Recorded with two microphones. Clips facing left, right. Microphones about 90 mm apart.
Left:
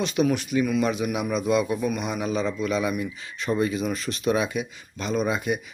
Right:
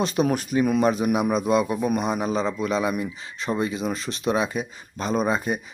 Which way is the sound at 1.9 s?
40° right (ahead or behind).